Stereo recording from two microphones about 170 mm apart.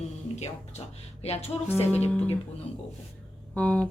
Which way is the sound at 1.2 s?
40° left (ahead or behind).